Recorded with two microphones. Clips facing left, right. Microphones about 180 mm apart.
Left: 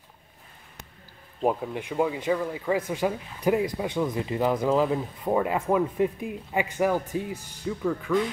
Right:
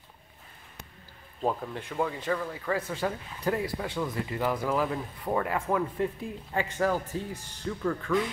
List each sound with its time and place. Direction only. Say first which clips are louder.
1.4 s speech: left 4 dB; 15° left (ahead or behind)